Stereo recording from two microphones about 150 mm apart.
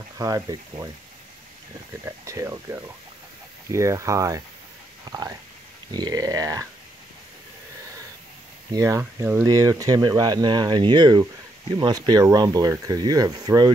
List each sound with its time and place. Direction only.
0.2 s speech: 20° right (ahead or behind)
2.0 s speech: 20° right (ahead or behind)
8.7 s speech: 20° right (ahead or behind)